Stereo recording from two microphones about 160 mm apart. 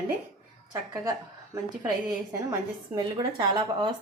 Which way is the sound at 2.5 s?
25° right (ahead or behind).